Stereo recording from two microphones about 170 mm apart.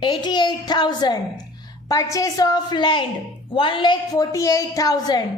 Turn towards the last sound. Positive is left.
turn(degrees=20)  # may be behind; listen again after turning